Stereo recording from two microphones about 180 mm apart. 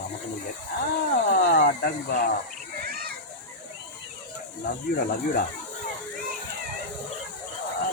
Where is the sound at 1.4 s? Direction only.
65° left (ahead or behind).